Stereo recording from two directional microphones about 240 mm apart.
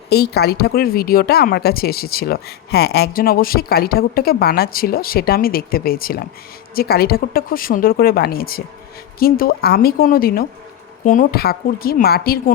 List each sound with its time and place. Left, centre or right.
0.1 s speech: left